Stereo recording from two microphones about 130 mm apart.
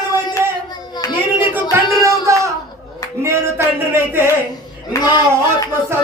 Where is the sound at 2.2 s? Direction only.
25° right (ahead or behind).